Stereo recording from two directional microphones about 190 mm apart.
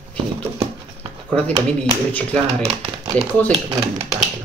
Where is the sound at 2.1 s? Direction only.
5° left (ahead or behind).